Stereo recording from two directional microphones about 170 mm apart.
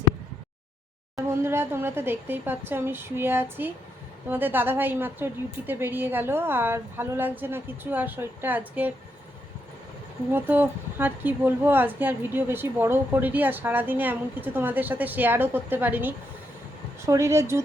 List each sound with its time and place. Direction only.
1.1 s a woman's voice: 15° right (ahead or behind)
10.3 s a woman's voice: 10° right (ahead or behind)